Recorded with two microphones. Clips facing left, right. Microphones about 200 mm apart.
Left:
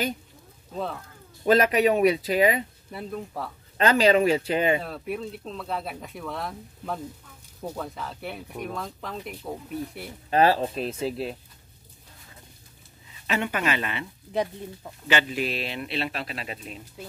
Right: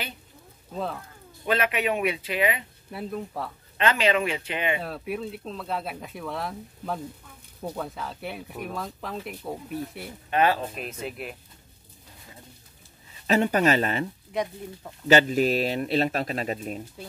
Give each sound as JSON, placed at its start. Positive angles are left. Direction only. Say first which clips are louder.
{"t": 1.4, "sound": "speech", "louder": "left 6 dB", "side_deg": 40}
{"t": 2.9, "sound": "speech", "louder": "right 4 dB", "side_deg": 0}
{"t": 3.7, "sound": "speech", "louder": "left 4 dB", "side_deg": 40}
{"t": 4.8, "sound": "speech", "louder": "even", "side_deg": 0}
{"t": 10.3, "sound": "speech", "louder": "left 3 dB", "side_deg": 35}
{"t": 13.3, "sound": "speech", "louder": "right 6 dB", "side_deg": -40}
{"t": 15.0, "sound": "speech", "louder": "right 6 dB", "side_deg": -40}